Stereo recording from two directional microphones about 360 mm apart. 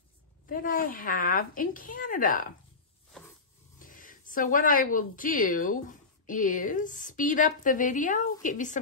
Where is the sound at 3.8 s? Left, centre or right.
Left.